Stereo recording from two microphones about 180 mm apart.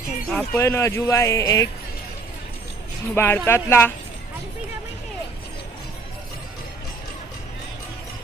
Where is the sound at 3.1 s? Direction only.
15° left (ahead or behind).